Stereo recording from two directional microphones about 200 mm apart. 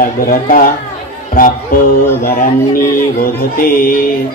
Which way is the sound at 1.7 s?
45° left (ahead or behind).